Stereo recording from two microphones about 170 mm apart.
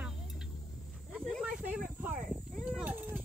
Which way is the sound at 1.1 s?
5° right (ahead or behind).